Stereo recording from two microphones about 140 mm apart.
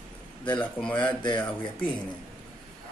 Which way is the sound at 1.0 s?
30° left (ahead or behind).